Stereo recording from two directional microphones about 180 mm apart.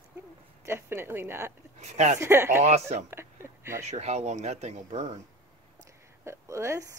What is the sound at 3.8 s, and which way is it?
Speech, 40° right (ahead or behind).